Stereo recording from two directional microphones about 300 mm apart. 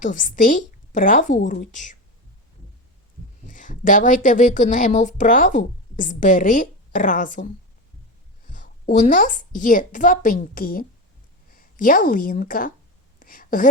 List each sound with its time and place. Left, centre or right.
0.0 s a woman's voice: left
3.4 s a woman's voice: left
13.1 s a sound: left